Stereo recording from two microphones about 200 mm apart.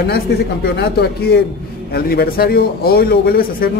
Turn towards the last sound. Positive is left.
turn(degrees=50)  # may be behind; listen again after turning